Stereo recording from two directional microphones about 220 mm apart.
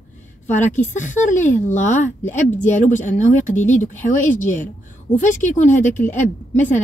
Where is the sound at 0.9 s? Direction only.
35° left (ahead or behind).